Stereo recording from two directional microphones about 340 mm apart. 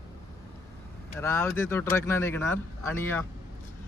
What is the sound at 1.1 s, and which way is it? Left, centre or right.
Speech, centre.